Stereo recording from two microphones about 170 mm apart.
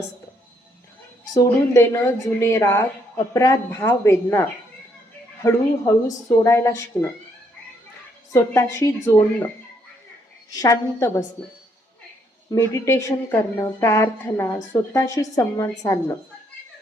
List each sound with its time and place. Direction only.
1.3 s a woman's voice: 20° left (ahead or behind)
8.3 s a woman's voice: 15° left (ahead or behind)
10.5 s a woman's voice: 20° left (ahead or behind)
12.5 s a woman's voice: 15° left (ahead or behind)